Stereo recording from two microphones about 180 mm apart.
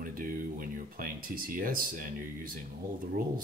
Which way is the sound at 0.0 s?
50° right (ahead or behind).